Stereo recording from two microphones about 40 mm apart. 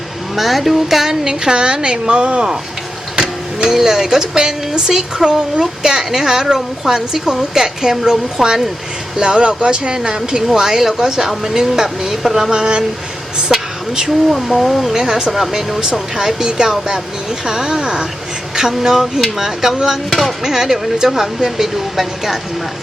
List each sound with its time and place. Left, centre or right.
0.3 s a woman's voice: centre; by 2.5 s right
3.2 s a sound: centre
3.8 s a woman's voice: centre
9.1 s a woman's voice: right
12.5 s speech: right
13.5 s a sound: centre
14.3 s speech: centre
14.9 s a woman's voice: centre
15.8 s a woman's voice: centre
20.1 s speech: centre
20.4 s a woman's voice: centre